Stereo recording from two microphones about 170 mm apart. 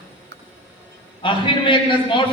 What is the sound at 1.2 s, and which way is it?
A man's voice, 30° left (ahead or behind).